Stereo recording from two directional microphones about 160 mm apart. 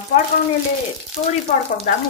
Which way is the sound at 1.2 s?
40° left (ahead or behind).